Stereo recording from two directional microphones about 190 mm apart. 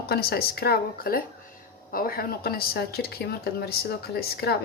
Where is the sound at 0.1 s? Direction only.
55° left (ahead or behind).